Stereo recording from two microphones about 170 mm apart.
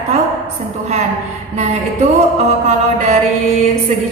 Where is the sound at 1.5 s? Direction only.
40° right (ahead or behind).